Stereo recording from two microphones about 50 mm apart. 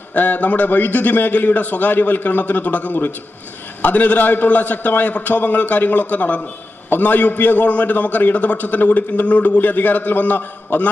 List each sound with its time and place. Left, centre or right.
0.1 s a man's voice: left